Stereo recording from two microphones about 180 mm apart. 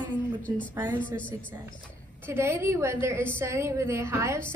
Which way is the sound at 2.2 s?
15° right (ahead or behind).